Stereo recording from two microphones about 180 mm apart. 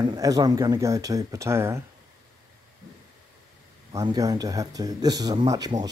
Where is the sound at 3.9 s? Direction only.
20° right (ahead or behind).